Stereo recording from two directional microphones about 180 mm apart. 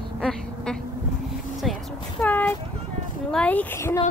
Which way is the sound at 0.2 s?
5° left (ahead or behind).